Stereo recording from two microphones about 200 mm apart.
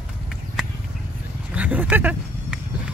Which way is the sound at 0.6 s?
Centre (ahead or behind).